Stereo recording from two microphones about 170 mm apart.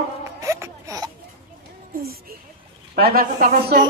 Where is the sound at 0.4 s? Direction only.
20° right (ahead or behind).